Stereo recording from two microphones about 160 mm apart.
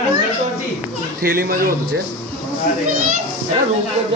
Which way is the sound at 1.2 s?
70° right (ahead or behind).